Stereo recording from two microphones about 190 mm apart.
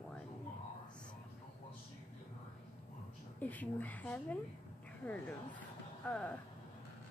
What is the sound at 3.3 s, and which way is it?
A woman's voice, 10° left (ahead or behind).